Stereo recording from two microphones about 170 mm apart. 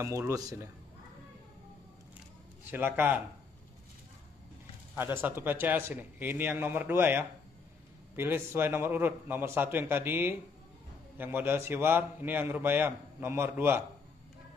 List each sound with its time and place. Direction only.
0.0 s speech: 15° right (ahead or behind)
2.7 s a man's voice: 10° right (ahead or behind)
4.9 s a man's voice: 10° right (ahead or behind)